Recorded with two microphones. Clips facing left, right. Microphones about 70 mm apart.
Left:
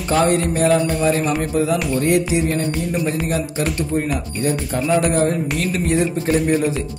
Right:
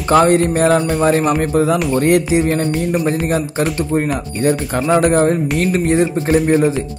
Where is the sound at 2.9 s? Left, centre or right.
Right.